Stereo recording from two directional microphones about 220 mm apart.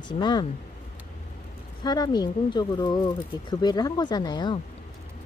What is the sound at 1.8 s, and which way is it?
Speech, 20° left (ahead or behind).